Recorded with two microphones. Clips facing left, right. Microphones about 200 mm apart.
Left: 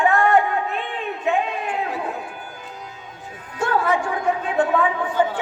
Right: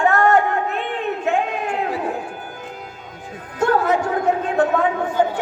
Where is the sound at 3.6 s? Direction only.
40° right (ahead or behind).